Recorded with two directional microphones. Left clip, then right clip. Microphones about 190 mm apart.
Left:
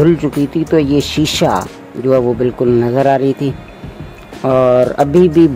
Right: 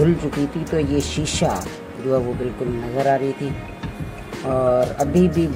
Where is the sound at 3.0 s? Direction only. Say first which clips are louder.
Left 7 dB; 40° left (ahead or behind).